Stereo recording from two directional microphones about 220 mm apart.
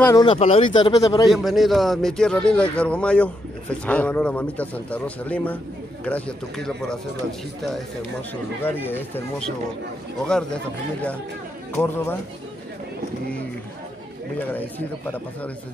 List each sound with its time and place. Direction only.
0.0 s speech: 20° left (ahead or behind)
1.3 s a man's voice: centre (ahead or behind)
8.8 s a man's voice: 10° left (ahead or behind)
14.5 s a man's voice: 10° left (ahead or behind)